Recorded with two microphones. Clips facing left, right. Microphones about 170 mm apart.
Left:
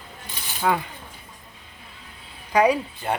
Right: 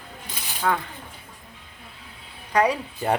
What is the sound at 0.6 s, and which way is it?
Speech, 15° left (ahead or behind).